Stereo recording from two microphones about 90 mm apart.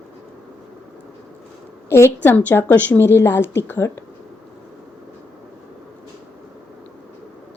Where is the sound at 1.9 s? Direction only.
25° left (ahead or behind).